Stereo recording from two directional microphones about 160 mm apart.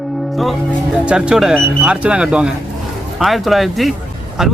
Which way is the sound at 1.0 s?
5° right (ahead or behind).